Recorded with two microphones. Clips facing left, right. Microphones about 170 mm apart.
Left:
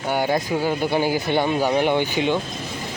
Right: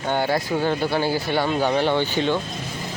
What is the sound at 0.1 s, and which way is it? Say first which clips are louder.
Speech: left 1 dB; 15° left (ahead or behind).